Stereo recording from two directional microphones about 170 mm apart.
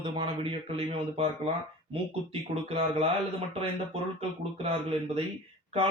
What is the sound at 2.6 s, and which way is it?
Speech, 35° right (ahead or behind).